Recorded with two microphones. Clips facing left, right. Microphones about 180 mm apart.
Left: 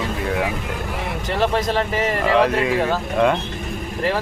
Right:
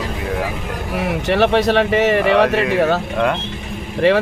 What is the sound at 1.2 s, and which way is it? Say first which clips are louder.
Speech: right 5 dB; 75° right (ahead or behind).